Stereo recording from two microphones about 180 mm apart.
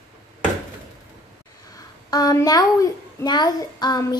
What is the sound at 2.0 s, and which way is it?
A child's voice, 20° left (ahead or behind).